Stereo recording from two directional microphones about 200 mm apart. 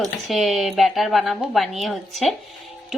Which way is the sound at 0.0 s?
Centre (ahead or behind).